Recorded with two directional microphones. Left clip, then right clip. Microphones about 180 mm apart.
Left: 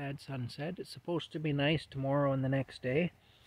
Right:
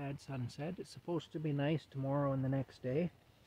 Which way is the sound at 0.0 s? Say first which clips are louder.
Left 3 dB; 5° left (ahead or behind).